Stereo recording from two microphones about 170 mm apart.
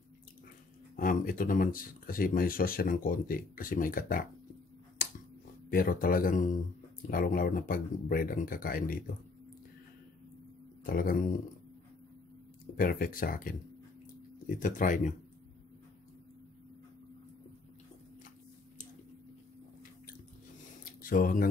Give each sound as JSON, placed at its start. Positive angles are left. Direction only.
{"t": 0.9, "sound": "speech", "side_deg": 55}
{"t": 5.7, "sound": "speech", "side_deg": 60}
{"t": 10.8, "sound": "speech", "side_deg": 60}
{"t": 12.7, "sound": "speech", "side_deg": 55}
{"t": 14.6, "sound": "speech", "side_deg": 50}
{"t": 21.0, "sound": "speech", "side_deg": 55}